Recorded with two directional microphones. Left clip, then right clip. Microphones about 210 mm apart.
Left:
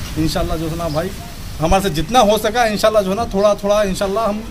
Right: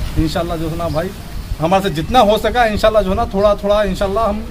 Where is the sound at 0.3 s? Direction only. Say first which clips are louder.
Right 1 dB; centre (ahead or behind).